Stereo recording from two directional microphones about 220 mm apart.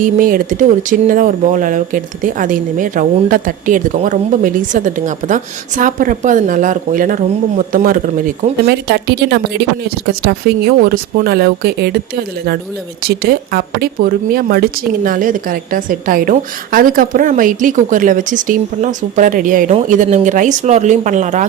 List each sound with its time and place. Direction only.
0.0 s speech: 40° right (ahead or behind)
13.0 s speech: 45° right (ahead or behind)